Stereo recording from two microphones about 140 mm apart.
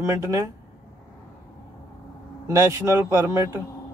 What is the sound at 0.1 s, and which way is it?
Speech, 20° right (ahead or behind).